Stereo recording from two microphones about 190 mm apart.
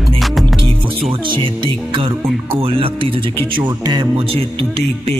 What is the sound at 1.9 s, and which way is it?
Music, 25° right (ahead or behind).